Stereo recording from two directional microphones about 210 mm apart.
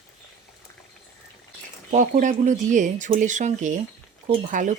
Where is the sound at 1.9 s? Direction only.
35° right (ahead or behind).